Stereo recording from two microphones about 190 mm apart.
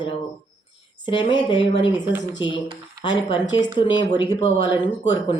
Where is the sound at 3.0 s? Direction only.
25° left (ahead or behind).